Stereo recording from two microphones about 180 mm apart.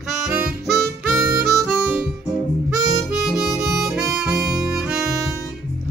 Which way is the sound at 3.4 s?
Centre (ahead or behind).